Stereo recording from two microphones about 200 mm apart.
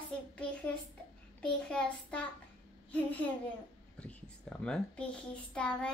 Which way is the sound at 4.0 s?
5° left (ahead or behind).